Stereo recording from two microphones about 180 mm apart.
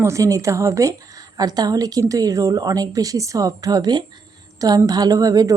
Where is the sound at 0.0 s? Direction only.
15° right (ahead or behind).